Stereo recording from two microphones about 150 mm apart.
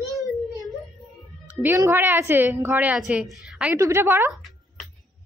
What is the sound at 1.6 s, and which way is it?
A woman's voice, 15° right (ahead or behind).